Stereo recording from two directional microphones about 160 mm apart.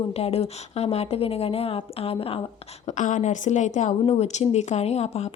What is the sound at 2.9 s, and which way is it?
A woman's voice, 50° left (ahead or behind).